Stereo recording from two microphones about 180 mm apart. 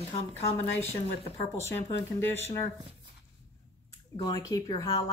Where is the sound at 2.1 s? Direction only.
15° left (ahead or behind).